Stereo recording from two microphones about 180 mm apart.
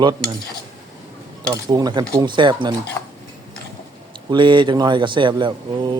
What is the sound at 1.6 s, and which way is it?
Speech, 20° right (ahead or behind).